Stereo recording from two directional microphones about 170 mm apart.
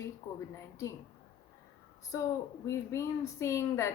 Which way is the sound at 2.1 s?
20° left (ahead or behind).